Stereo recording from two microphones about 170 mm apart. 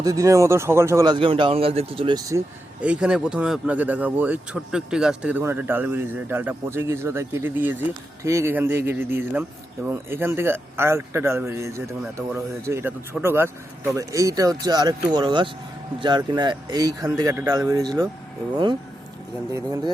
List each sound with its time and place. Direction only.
0.0 s speech: 20° right (ahead or behind)
2.8 s speech: 5° right (ahead or behind)